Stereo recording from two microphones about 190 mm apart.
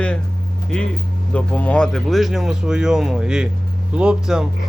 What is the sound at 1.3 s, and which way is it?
Speech, 5° left (ahead or behind).